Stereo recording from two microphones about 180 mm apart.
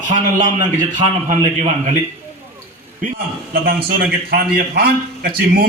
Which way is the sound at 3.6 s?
55° right (ahead or behind).